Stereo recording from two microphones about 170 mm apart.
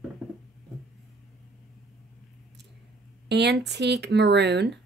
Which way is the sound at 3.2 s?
80° right.